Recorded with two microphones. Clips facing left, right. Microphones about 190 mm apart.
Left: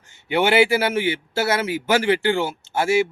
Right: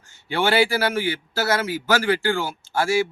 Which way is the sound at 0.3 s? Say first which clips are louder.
Left 3 dB; 20° left (ahead or behind).